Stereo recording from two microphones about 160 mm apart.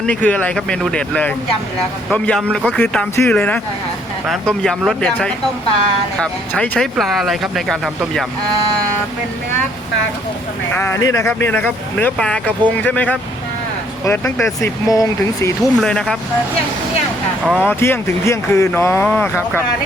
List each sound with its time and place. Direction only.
0.0 s speech: 5° left (ahead or behind)
10.8 s speech: 15° left (ahead or behind)
15.6 s speech: 5° left (ahead or behind)
17.4 s speech: centre (ahead or behind)
17.7 s speech: 15° left (ahead or behind)